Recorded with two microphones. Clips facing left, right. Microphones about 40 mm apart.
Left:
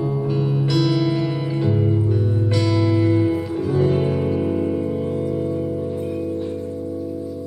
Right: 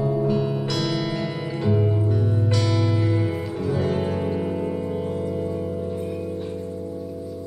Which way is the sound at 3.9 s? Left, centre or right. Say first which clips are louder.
Left 4 dB; centre.